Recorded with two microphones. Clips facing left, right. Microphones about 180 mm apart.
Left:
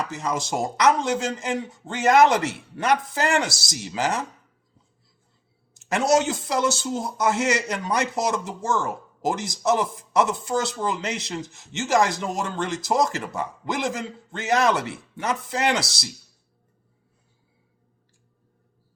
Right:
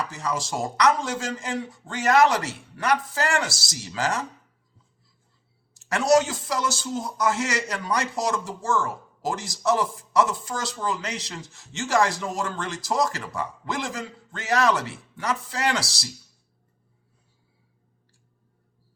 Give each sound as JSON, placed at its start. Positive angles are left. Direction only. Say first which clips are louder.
{"t": 0.1, "sound": "speech", "louder": "left 2 dB", "side_deg": 20}
{"t": 5.7, "sound": "speech", "louder": "right 1 dB", "side_deg": 20}